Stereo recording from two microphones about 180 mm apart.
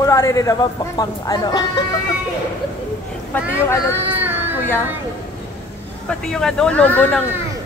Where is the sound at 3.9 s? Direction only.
10° right (ahead or behind).